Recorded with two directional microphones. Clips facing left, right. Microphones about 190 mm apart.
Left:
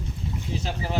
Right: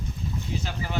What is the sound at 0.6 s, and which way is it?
Speech, 30° left (ahead or behind).